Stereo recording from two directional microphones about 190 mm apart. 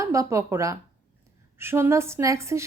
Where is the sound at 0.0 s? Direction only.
15° right (ahead or behind).